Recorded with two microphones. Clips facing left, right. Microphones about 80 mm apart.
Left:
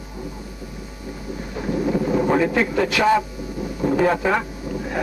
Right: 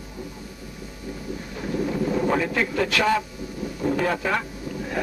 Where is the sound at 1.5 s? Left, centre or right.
Centre.